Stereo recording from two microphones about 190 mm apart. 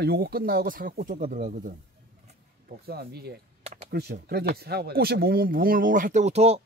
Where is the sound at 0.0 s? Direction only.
55° right (ahead or behind).